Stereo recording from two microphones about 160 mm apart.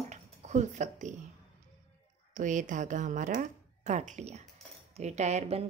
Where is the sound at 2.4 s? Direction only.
50° right (ahead or behind).